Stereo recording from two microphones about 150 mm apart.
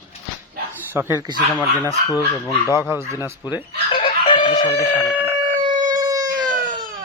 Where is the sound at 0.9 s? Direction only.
15° right (ahead or behind).